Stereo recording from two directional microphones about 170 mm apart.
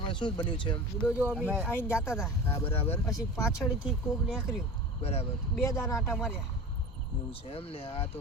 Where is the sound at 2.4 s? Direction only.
15° left (ahead or behind).